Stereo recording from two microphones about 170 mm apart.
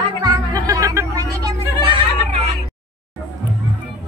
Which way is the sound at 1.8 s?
30° right (ahead or behind).